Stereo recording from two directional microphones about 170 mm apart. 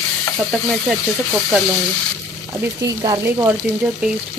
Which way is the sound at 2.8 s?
20° right (ahead or behind).